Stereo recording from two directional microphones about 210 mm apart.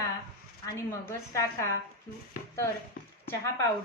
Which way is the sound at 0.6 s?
15° left (ahead or behind).